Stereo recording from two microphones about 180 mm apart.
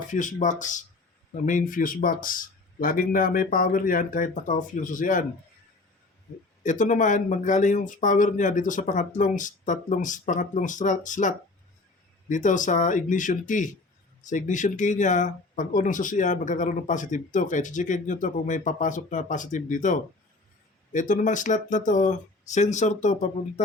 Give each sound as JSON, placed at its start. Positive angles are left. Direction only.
{"t": 0.1, "sound": "speech", "side_deg": 45}
{"t": 6.6, "sound": "speech", "side_deg": 45}